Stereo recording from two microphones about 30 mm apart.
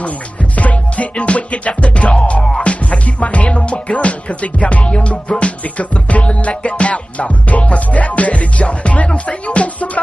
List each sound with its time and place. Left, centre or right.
0.6 s music: left
1.1 s music: left